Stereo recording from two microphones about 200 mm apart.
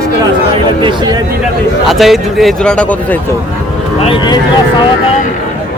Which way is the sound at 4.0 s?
30° left (ahead or behind).